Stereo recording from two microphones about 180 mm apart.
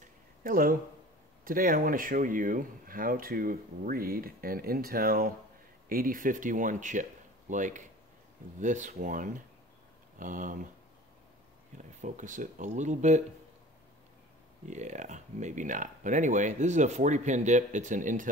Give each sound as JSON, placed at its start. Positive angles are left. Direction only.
{"t": 0.0, "sound": "a sound", "side_deg": -50}
{"t": 1.4, "sound": "speech", "side_deg": -50}
{"t": 12.0, "sound": "speech", "side_deg": -45}
{"t": 14.7, "sound": "speech", "side_deg": -40}